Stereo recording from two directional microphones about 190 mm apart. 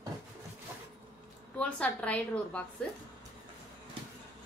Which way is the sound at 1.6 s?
5° left (ahead or behind).